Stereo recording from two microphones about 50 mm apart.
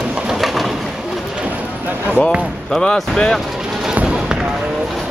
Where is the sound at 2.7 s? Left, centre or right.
Centre.